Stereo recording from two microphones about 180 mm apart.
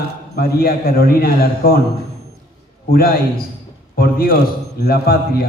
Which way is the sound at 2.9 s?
55° left (ahead or behind).